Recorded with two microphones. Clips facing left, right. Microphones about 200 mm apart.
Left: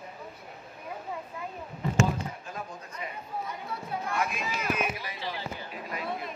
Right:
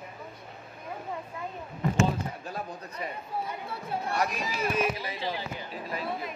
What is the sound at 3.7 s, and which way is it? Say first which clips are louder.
Chatter: right 1 dB; 35° right (ahead or behind).